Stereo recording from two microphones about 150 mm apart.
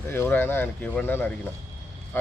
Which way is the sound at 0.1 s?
15° left (ahead or behind).